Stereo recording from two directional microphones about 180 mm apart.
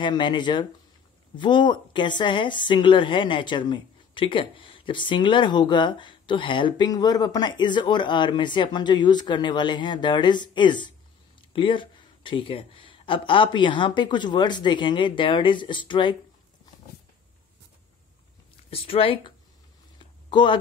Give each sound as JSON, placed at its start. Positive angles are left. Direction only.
{"t": 0.0, "sound": "a woman's voice", "side_deg": 25}
{"t": 18.7, "sound": "speech", "side_deg": 30}
{"t": 20.0, "sound": "a sound", "side_deg": 25}